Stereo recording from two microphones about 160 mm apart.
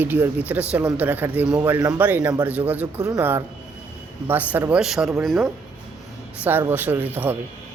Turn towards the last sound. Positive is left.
turn(degrees=-10)  # may be behind; listen again after turning